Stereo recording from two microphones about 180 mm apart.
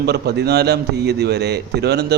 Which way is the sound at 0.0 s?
65° right (ahead or behind).